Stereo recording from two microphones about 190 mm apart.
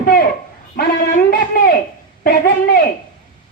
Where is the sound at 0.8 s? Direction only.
50° left (ahead or behind).